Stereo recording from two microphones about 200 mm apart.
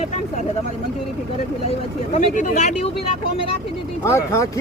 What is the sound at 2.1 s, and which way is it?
Speech, 40° left (ahead or behind).